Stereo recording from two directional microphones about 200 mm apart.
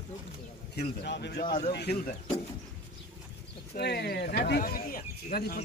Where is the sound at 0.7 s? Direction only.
55° left (ahead or behind).